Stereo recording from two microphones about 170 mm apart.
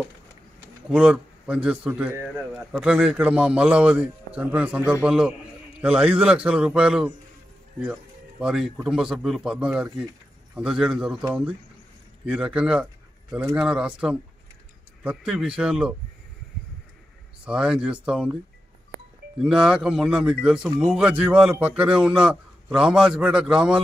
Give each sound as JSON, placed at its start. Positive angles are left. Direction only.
{"t": 0.8, "sound": "a man's voice", "side_deg": -5}
{"t": 12.3, "sound": "a man's voice", "side_deg": -5}
{"t": 17.5, "sound": "a man's voice", "side_deg": -5}
{"t": 19.4, "sound": "a man's voice", "side_deg": -5}